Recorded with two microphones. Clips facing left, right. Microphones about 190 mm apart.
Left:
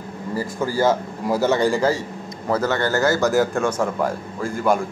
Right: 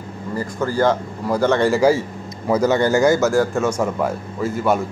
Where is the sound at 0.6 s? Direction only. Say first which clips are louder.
Right 1 dB; 10° left (ahead or behind).